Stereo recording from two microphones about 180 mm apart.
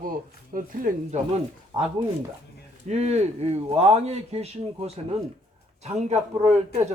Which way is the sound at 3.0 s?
35° right (ahead or behind).